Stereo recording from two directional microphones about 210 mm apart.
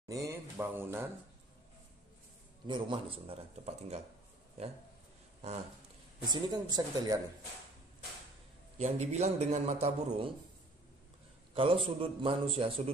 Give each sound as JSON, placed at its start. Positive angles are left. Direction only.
{"t": 0.1, "sound": "speech", "side_deg": -10}
{"t": 2.6, "sound": "speech", "side_deg": -20}
{"t": 6.2, "sound": "speech", "side_deg": -20}
{"t": 8.7, "sound": "a man's voice", "side_deg": -30}
{"t": 11.5, "sound": "speech", "side_deg": -25}